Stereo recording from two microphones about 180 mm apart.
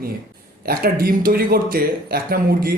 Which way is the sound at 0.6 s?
55° right (ahead or behind).